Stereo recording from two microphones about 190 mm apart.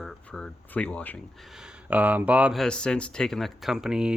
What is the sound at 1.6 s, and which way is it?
Speech, 10° right (ahead or behind).